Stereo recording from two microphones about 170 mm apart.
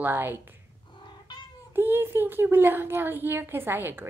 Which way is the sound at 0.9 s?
25° left (ahead or behind).